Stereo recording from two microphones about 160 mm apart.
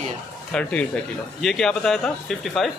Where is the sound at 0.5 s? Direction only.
5° left (ahead or behind).